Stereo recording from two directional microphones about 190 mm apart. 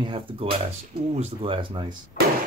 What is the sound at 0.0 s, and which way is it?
A man's voice, 25° right (ahead or behind).